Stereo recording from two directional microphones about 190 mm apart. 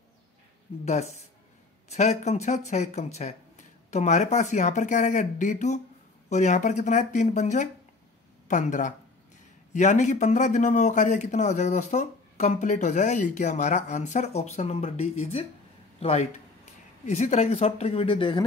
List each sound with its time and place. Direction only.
1.9 s a man's voice: 35° left (ahead or behind)